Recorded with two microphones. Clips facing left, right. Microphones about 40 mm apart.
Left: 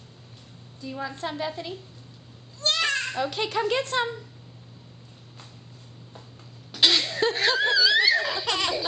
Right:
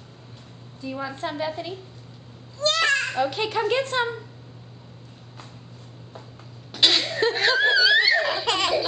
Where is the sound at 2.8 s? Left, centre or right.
Centre.